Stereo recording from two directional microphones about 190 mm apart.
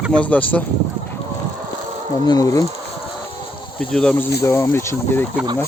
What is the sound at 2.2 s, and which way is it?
Speech, 20° left (ahead or behind).